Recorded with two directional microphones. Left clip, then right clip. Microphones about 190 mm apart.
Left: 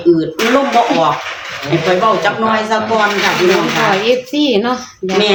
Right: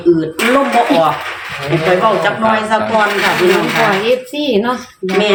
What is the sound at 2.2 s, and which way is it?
Speech, centre (ahead or behind).